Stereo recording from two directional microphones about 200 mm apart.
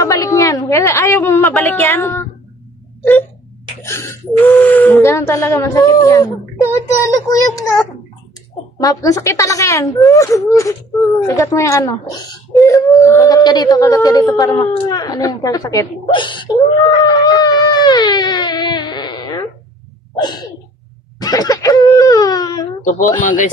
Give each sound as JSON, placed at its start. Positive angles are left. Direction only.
{"t": 0.0, "sound": "a woman's voice", "side_deg": 15}
{"t": 8.7, "sound": "a woman's voice", "side_deg": 20}
{"t": 20.2, "sound": "sneeze", "side_deg": 20}
{"t": 21.2, "sound": "speech", "side_deg": 20}
{"t": 22.8, "sound": "speech", "side_deg": 35}